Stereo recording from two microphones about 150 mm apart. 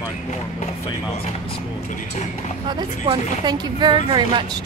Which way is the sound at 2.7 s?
30° right (ahead or behind).